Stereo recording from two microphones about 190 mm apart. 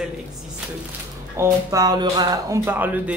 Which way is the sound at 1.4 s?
15° right (ahead or behind).